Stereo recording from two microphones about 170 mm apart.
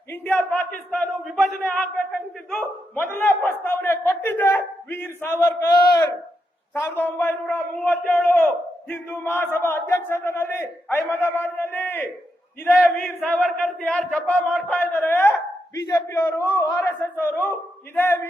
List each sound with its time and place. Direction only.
0.1 s a man's voice: 10° left (ahead or behind)
14.8 s a man's voice: 15° left (ahead or behind)